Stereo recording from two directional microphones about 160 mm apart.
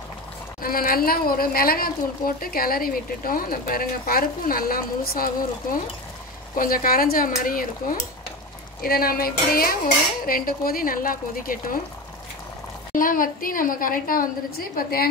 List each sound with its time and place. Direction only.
0.6 s a woman's voice: 65° left (ahead or behind)
12.9 s a woman's voice: 60° left (ahead or behind)